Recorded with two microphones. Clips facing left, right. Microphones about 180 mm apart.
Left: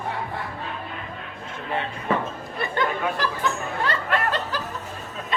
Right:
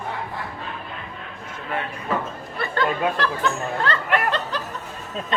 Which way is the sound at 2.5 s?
15° left (ahead or behind).